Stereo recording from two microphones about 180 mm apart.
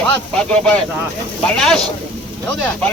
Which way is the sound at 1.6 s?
5° left (ahead or behind).